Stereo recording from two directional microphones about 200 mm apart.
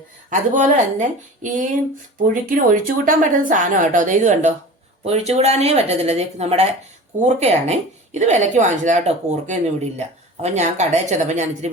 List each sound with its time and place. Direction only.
0.3 s speech: 35° right (ahead or behind)